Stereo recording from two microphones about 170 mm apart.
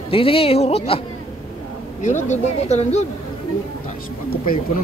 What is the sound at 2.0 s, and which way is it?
Speech, 45° left (ahead or behind).